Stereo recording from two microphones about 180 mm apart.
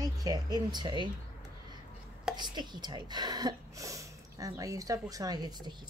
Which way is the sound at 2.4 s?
25° right (ahead or behind).